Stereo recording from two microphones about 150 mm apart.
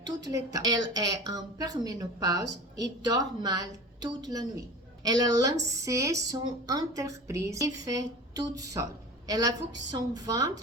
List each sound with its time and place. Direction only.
0.2 s a woman's voice: 25° right (ahead or behind)